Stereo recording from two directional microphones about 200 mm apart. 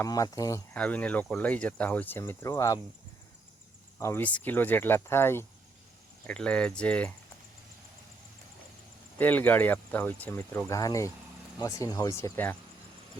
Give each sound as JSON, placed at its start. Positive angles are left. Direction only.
{"t": 0.0, "sound": "speech", "side_deg": 15}
{"t": 3.9, "sound": "speech", "side_deg": 10}
{"t": 9.1, "sound": "speech", "side_deg": 10}